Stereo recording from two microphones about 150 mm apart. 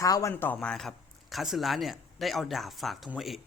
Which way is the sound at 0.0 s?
20° left (ahead or behind).